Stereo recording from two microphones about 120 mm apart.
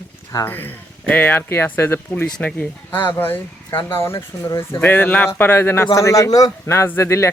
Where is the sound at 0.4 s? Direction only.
15° left (ahead or behind).